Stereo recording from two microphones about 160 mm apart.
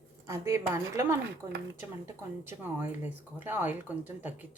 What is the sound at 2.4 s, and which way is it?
Speech, 15° right (ahead or behind).